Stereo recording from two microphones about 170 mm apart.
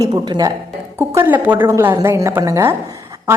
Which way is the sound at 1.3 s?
10° right (ahead or behind).